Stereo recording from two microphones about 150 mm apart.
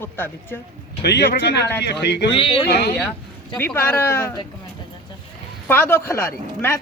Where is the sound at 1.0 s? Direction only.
90° left.